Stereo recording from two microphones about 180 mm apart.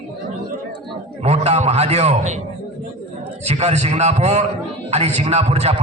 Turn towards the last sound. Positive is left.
turn(degrees=-35)  # may be behind; listen again after turning